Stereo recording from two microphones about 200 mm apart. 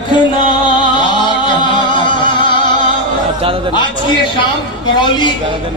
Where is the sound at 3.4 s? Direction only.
25° right (ahead or behind).